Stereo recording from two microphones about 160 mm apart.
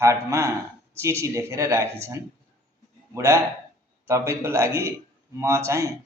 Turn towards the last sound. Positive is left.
turn(degrees=-20)  # may be behind; listen again after turning